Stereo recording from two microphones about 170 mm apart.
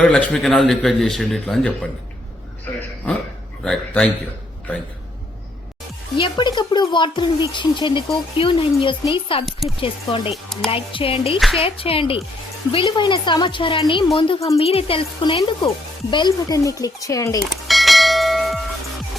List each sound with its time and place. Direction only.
0.0 s speech: 5° left (ahead or behind)
3.6 s speech: 5° left (ahead or behind)
6.1 s speech: 30° left (ahead or behind)
11.3 s speech: centre (ahead or behind)
11.6 s speech: 35° left (ahead or behind); by 17.4 s 20° left (ahead or behind)
17.4 s church bell: centre (ahead or behind)